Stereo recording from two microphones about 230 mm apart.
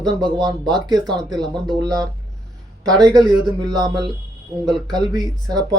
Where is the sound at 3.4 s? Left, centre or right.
Centre.